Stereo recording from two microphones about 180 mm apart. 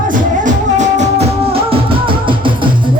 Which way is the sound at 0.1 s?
45° right (ahead or behind).